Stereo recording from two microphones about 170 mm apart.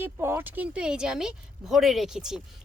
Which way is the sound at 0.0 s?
15° right (ahead or behind).